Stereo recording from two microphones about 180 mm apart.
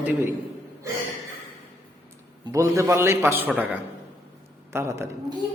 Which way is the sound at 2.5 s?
15° right (ahead or behind).